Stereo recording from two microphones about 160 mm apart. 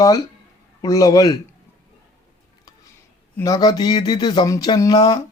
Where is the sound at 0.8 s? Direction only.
20° left (ahead or behind).